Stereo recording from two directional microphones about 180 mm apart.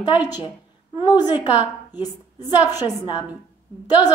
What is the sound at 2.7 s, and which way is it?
Speech, 25° left (ahead or behind).